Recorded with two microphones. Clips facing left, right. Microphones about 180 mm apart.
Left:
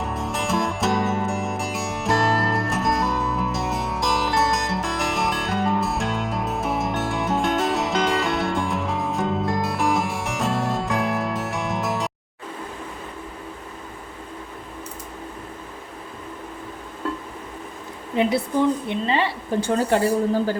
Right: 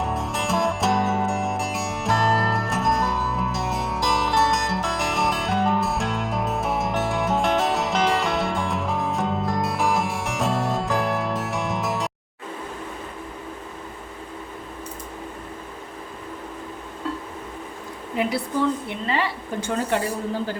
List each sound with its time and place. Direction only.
0.0 s music: centre (ahead or behind)
18.9 s a woman's voice: 25° left (ahead or behind)